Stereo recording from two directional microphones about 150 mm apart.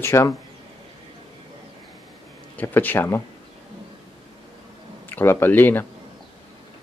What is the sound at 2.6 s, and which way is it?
Speech, 15° left (ahead or behind).